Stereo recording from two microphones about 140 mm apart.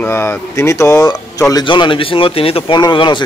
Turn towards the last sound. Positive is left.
turn(degrees=35)  # may be behind; listen again after turning